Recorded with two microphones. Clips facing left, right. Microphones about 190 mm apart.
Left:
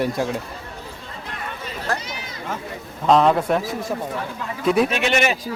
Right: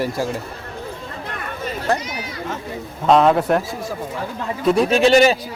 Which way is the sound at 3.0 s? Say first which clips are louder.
Right 2 dB; centre (ahead or behind).